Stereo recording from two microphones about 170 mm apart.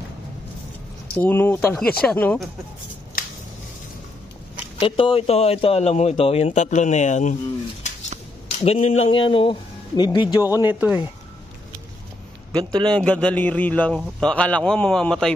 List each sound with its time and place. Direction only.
1.1 s a man's voice: 10° left (ahead or behind)
3.2 s scissors: 55° left (ahead or behind)
4.7 s speech: 30° left (ahead or behind)
8.5 s speech: 40° left (ahead or behind)
10.7 s speech: 10° right (ahead or behind)
12.5 s a man's voice: 25° right (ahead or behind)
12.9 s a man's voice: 5° left (ahead or behind)